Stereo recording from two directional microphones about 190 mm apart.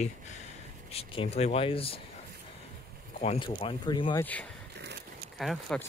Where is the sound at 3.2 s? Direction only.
35° left (ahead or behind).